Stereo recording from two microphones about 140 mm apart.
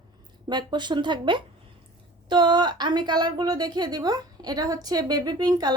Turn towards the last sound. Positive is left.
turn(degrees=-30)  # may be behind; listen again after turning